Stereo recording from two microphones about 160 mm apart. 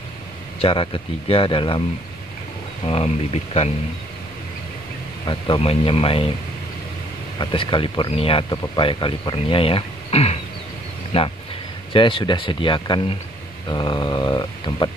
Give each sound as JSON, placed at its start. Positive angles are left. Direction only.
{"t": 0.6, "sound": "speech", "side_deg": 35}
{"t": 2.8, "sound": "speech", "side_deg": 40}
{"t": 5.2, "sound": "speech", "side_deg": 30}
{"t": 7.3, "sound": "speech", "side_deg": 30}
{"t": 13.7, "sound": "a sound", "side_deg": 30}